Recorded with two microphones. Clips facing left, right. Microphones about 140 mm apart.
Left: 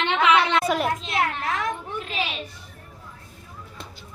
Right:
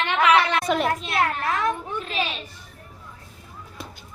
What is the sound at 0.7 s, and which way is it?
Speech, centre (ahead or behind).